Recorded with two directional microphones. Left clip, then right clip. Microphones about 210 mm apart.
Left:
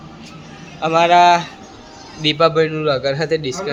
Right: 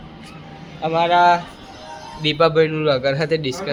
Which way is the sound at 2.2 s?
5° left (ahead or behind).